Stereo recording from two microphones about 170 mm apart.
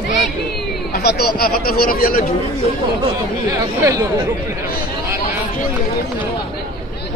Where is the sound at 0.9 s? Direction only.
70° left (ahead or behind).